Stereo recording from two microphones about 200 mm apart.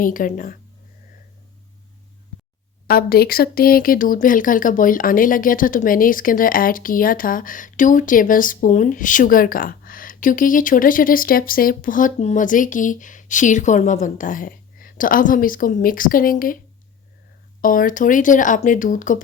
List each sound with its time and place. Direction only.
0.0 s speech: 40° left (ahead or behind)
2.8 s speech: 50° left (ahead or behind)
17.6 s speech: 45° left (ahead or behind)